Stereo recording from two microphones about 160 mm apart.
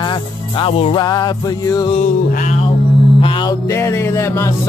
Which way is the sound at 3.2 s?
35° left (ahead or behind).